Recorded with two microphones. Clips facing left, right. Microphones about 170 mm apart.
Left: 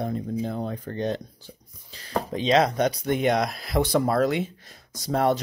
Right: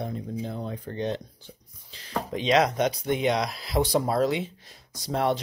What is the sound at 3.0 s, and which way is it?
Speech, 50° left (ahead or behind).